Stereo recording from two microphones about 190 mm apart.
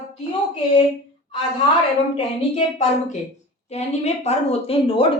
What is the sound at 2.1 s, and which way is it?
A woman's voice, 35° left (ahead or behind).